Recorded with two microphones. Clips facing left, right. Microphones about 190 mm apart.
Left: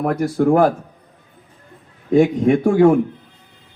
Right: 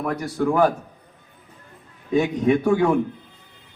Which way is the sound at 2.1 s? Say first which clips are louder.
Left 5 dB; 50° left (ahead or behind).